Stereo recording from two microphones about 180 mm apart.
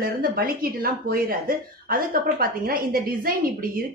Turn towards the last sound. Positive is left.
turn(degrees=-55)  # may be behind; listen again after turning